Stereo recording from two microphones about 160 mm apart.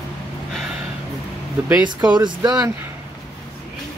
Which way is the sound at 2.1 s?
25° right (ahead or behind).